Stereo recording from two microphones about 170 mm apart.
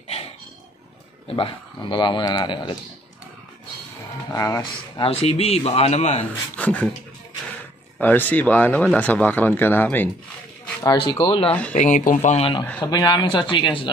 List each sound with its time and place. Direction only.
1.2 s a man's voice: 30° left (ahead or behind)
4.3 s a man's voice: 20° left (ahead or behind)
5.0 s speech: 35° left (ahead or behind)
6.5 s a sound: 10° left (ahead or behind)
8.0 s speech: 10° left (ahead or behind)
10.8 s a man's voice: 25° left (ahead or behind)
11.7 s speech: 45° left (ahead or behind)
12.8 s a man's voice: 25° left (ahead or behind)